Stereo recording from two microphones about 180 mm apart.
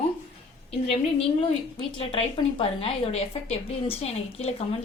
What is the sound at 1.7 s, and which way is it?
A woman's voice, 30° left (ahead or behind).